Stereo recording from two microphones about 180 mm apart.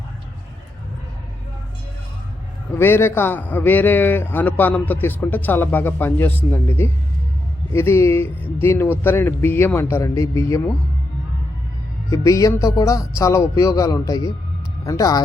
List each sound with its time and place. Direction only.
2.7 s a man's voice: 15° left (ahead or behind)
12.1 s a man's voice: 15° left (ahead or behind)